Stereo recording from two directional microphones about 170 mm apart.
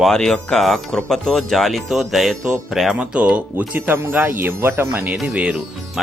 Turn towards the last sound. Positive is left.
turn(degrees=-5)  # may be behind; listen again after turning